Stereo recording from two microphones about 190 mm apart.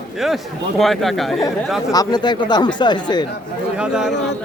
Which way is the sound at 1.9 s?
20° left (ahead or behind).